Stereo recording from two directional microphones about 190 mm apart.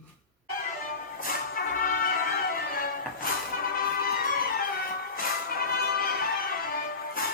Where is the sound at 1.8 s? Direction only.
45° left (ahead or behind).